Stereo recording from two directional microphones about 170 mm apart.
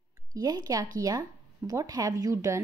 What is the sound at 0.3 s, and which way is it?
A woman's voice, 20° right (ahead or behind).